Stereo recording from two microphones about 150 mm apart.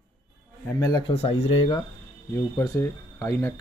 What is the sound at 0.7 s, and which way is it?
Speech, 25° left (ahead or behind).